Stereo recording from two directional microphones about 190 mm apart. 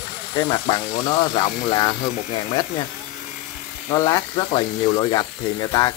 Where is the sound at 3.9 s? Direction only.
20° left (ahead or behind).